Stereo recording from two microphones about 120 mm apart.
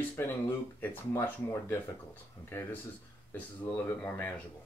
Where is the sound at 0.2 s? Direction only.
20° left (ahead or behind).